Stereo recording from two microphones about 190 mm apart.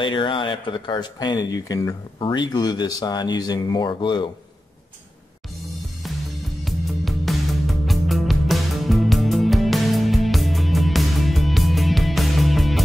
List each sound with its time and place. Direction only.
0.0 s speech: 25° left (ahead or behind)
6.6 s music: centre (ahead or behind)